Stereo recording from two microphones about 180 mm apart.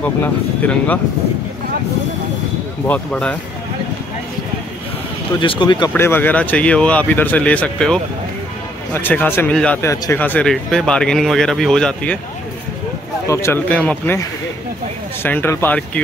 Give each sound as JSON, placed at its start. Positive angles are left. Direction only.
{"t": 0.0, "sound": "speech", "side_deg": 10}
{"t": 2.9, "sound": "speech", "side_deg": 5}
{"t": 5.4, "sound": "speech", "side_deg": 25}
{"t": 5.9, "sound": "speech", "side_deg": 10}
{"t": 13.3, "sound": "speech", "side_deg": 15}
{"t": 15.2, "sound": "speech", "side_deg": 10}